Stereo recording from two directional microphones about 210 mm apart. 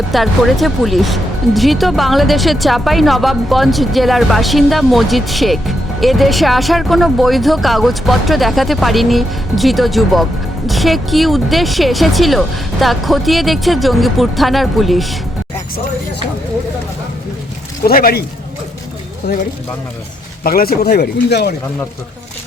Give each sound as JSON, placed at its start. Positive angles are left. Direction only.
{"t": 0.1, "sound": "speech", "side_deg": 0}
{"t": 17.8, "sound": "speech", "side_deg": 45}
{"t": 19.3, "sound": "speech", "side_deg": 50}